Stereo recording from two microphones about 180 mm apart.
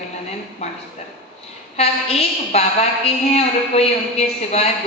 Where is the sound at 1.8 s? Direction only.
35° left (ahead or behind).